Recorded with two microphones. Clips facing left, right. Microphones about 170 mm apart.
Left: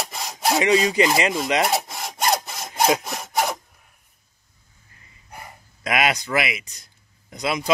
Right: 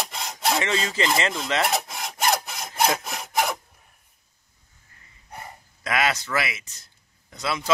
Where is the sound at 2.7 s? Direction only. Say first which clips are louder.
Left 3 dB; 20° left (ahead or behind).